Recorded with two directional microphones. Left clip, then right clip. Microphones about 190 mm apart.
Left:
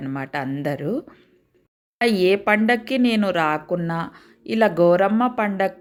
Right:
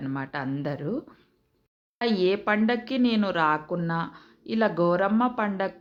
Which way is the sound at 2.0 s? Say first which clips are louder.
Left 6 dB; 20° left (ahead or behind).